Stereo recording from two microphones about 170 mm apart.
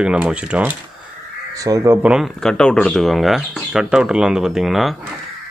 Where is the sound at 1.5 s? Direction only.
20° right (ahead or behind).